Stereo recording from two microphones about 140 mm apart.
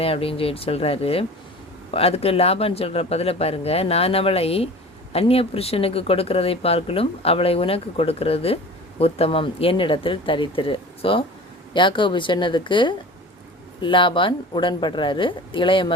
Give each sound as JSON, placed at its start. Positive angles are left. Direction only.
{"t": 0.0, "sound": "speech", "side_deg": 40}